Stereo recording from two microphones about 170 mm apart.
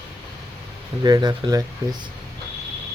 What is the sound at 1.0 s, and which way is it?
Speech, 25° right (ahead or behind).